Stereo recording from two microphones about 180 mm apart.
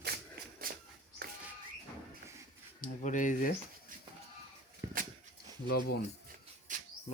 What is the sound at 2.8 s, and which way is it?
Speech, 45° left (ahead or behind).